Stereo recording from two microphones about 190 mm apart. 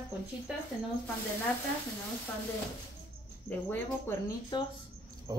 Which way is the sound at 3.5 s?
10° left (ahead or behind).